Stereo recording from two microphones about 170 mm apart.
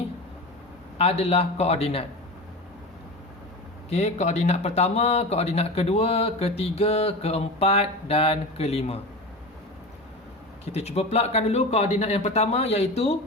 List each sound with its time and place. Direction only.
0.9 s speech: 35° left (ahead or behind)
3.8 s speech: 40° left (ahead or behind)
10.7 s speech: 40° left (ahead or behind)